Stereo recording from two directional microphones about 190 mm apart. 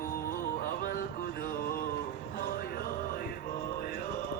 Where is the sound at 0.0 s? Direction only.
50° left (ahead or behind).